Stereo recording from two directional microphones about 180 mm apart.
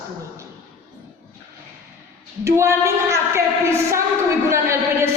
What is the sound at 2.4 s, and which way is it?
A woman's voice, 15° right (ahead or behind).